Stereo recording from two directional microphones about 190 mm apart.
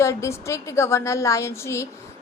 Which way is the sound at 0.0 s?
15° left (ahead or behind).